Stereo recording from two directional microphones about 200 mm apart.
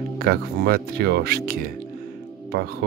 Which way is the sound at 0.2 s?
50° right (ahead or behind).